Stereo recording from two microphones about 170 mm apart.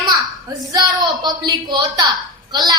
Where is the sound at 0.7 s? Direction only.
25° right (ahead or behind).